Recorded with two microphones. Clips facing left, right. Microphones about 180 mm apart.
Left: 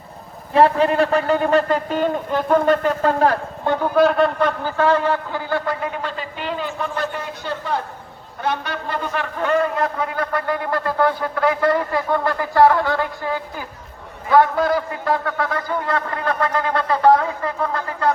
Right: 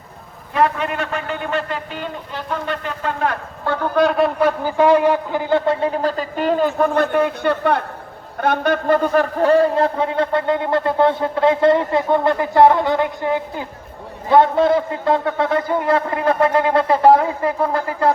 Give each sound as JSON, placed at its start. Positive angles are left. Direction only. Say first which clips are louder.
{"t": 0.5, "sound": "a man's voice", "louder": "left 4 dB", "side_deg": 30}
{"t": 3.9, "sound": "a man's voice", "louder": "even", "side_deg": 0}
{"t": 8.4, "sound": "a man's voice", "louder": "right 6 dB", "side_deg": -55}